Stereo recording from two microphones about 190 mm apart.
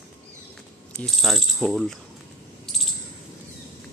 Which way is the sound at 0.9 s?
Centre (ahead or behind).